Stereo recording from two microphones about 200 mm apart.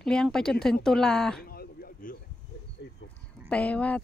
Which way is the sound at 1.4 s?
50° left (ahead or behind).